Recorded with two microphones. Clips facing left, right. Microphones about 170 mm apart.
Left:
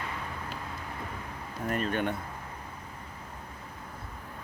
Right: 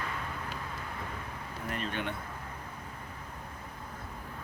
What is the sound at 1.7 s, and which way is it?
Speech, 45° left (ahead or behind).